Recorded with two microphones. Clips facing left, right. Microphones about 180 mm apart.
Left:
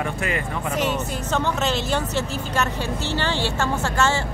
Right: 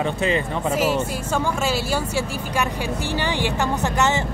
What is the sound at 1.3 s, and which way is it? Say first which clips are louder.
Speech: even; 10° right (ahead or behind).